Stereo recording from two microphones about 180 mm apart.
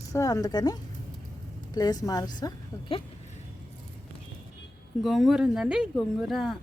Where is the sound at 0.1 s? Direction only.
15° left (ahead or behind).